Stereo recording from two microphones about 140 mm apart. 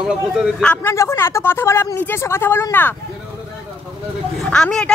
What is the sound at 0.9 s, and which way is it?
Speech, 20° left (ahead or behind).